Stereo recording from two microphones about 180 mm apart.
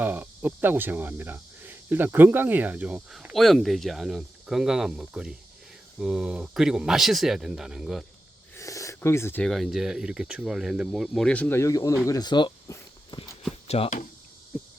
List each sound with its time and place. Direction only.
0.0 s speech: 10° right (ahead or behind)
8.5 s speech: 15° left (ahead or behind)
13.7 s a sound: 35° left (ahead or behind)
14.5 s cricket: 10° left (ahead or behind)